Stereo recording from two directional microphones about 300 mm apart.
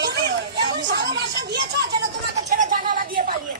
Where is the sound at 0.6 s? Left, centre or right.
Centre.